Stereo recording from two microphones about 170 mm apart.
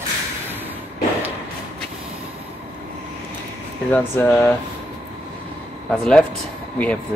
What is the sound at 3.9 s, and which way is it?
Speech, 10° left (ahead or behind).